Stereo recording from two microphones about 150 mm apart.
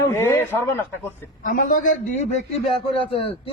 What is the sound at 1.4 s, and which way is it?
A man's voice, 65° left (ahead or behind).